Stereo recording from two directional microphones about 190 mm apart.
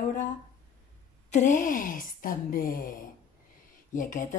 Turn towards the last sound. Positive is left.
turn(degrees=45)  # may be behind; listen again after turning